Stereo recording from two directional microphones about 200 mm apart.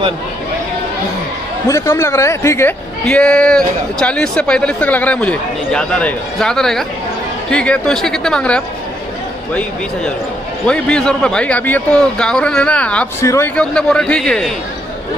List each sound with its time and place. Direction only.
1.7 s speech: 15° left (ahead or behind)
10.7 s speech: 5° left (ahead or behind)